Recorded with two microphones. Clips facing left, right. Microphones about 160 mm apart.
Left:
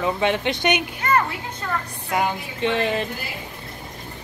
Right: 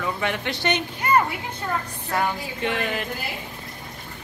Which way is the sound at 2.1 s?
20° left (ahead or behind).